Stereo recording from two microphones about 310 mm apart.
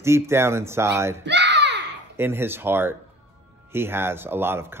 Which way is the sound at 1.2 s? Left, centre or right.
Right.